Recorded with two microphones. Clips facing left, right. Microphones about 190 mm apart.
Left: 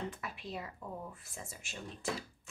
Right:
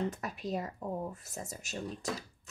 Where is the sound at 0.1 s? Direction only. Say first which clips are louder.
Right 7 dB; 40° right (ahead or behind).